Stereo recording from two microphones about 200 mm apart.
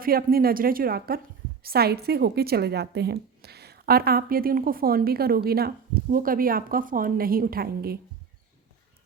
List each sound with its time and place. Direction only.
0.0 s a woman's voice: 50° right (ahead or behind)